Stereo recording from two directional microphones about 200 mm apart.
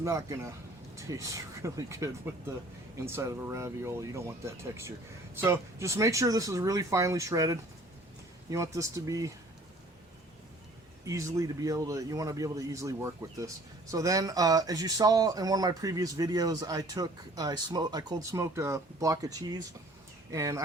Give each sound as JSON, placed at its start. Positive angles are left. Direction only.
{"t": 0.0, "sound": "speech", "side_deg": -15}
{"t": 11.0, "sound": "speech", "side_deg": -15}